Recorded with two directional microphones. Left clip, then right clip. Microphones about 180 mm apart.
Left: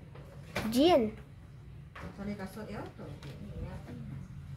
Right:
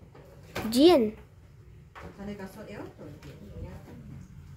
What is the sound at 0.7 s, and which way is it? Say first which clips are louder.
Speech: right 5 dB; 20° right (ahead or behind).